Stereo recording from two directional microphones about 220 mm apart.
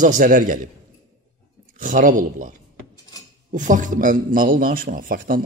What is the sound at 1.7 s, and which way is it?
Speech, 40° right (ahead or behind).